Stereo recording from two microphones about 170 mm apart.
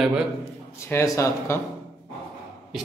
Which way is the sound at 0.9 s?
15° left (ahead or behind).